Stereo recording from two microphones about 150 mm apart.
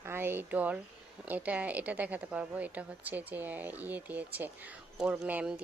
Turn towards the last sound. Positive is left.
turn(degrees=-10)  # may be behind; listen again after turning